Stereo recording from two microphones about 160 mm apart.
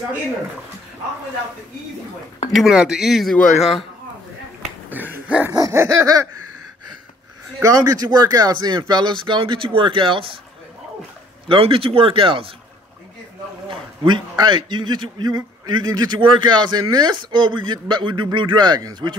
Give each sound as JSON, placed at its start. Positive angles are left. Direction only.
{"t": 2.5, "sound": "speech", "side_deg": -5}
{"t": 4.6, "sound": "a sound", "side_deg": -10}
{"t": 5.3, "sound": "dog", "side_deg": -5}
{"t": 5.6, "sound": "a man's voice", "side_deg": -15}
{"t": 7.6, "sound": "a man's voice", "side_deg": -20}
{"t": 11.4, "sound": "speech", "side_deg": -35}
{"t": 13.7, "sound": "a man's voice", "side_deg": -30}